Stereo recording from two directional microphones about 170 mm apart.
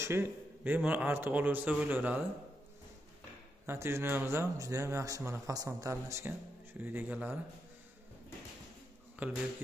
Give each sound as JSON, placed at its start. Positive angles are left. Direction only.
{"t": 0.0, "sound": "speech", "side_deg": -10}
{"t": 3.6, "sound": "speech", "side_deg": -15}
{"t": 9.2, "sound": "speech", "side_deg": -10}